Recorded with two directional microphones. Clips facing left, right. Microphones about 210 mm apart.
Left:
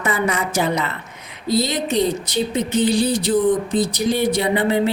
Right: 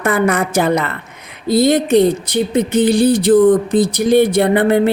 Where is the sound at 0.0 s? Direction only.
55° right (ahead or behind).